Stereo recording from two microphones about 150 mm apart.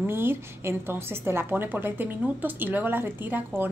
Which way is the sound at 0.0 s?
15° right (ahead or behind).